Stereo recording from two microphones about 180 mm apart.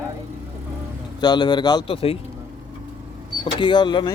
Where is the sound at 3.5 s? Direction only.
25° left (ahead or behind).